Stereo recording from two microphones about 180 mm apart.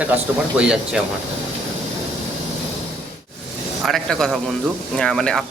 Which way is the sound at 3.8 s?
Centre (ahead or behind).